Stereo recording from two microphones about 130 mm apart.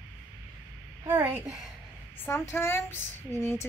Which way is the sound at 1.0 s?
15° right (ahead or behind).